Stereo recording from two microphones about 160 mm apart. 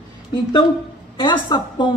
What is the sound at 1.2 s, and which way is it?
Speech, 30° left (ahead or behind).